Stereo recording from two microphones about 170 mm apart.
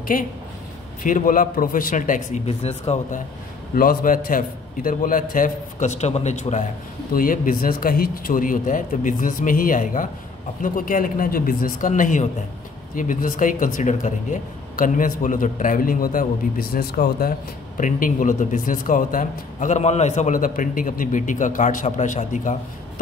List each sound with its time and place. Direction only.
0.1 s a man's voice: 50° left (ahead or behind)
3.7 s a man's voice: 60° left (ahead or behind)
7.2 s a man's voice: 55° left (ahead or behind)